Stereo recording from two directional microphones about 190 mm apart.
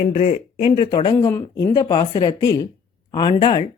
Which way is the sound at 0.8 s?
25° left (ahead or behind).